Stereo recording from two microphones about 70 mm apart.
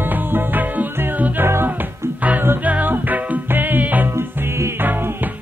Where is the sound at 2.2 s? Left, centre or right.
Right.